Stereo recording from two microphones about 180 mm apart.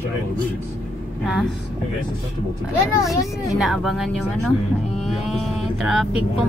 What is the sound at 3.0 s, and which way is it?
Speech, 20° left (ahead or behind).